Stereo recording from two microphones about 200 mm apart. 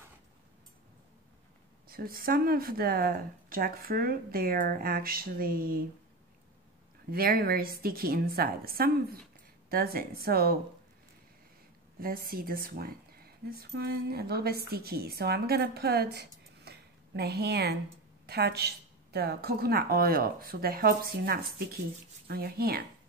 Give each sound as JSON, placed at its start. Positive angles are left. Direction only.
{"t": 1.9, "sound": "speech", "side_deg": -45}
{"t": 7.1, "sound": "speech", "side_deg": -50}
{"t": 12.0, "sound": "a woman's voice", "side_deg": -50}